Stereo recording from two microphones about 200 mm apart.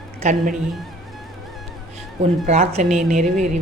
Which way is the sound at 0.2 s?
35° right (ahead or behind).